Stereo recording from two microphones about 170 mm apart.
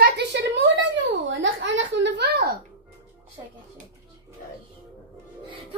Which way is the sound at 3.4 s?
20° right (ahead or behind).